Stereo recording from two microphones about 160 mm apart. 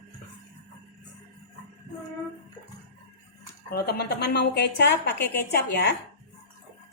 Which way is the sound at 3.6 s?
85° left.